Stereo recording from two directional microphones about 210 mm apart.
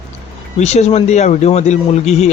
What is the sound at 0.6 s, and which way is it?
Speech, 30° left (ahead or behind).